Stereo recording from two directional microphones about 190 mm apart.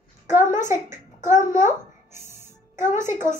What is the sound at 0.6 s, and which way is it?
Speech, 15° right (ahead or behind).